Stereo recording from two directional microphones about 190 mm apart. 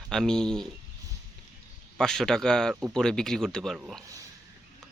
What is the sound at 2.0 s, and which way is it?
Speech, 5° left (ahead or behind).